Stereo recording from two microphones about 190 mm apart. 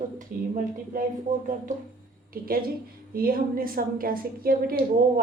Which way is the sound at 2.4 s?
50° right (ahead or behind).